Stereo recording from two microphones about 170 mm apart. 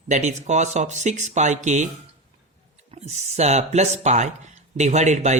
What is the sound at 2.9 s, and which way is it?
Speech, 40° right (ahead or behind).